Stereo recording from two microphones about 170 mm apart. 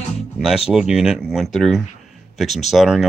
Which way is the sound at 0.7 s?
5° right (ahead or behind).